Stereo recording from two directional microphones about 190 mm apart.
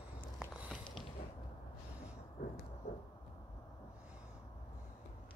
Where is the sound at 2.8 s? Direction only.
40° left (ahead or behind).